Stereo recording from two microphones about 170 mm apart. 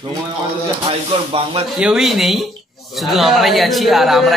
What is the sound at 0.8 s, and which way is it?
Speech, 35° right (ahead or behind).